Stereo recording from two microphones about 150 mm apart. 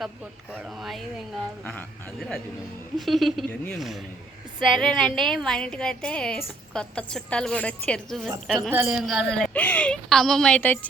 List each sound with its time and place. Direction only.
0.5 s a woman's voice: centre (ahead or behind)
8.7 s a woman's voice: 10° right (ahead or behind); by 10.8 s 10° left (ahead or behind)